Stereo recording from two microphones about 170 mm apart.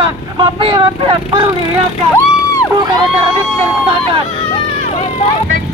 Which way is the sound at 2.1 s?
20° left (ahead or behind).